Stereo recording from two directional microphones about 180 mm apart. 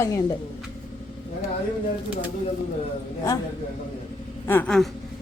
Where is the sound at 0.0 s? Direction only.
20° left (ahead or behind).